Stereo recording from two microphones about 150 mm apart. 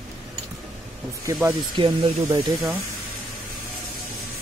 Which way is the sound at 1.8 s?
30° right (ahead or behind).